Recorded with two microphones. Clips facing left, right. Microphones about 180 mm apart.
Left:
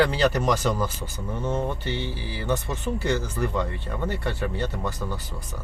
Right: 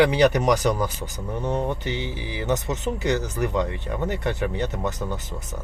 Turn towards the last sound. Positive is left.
turn(degrees=-20)  # may be behind; listen again after turning